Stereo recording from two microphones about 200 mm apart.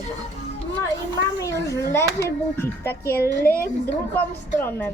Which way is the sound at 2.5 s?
10° left (ahead or behind).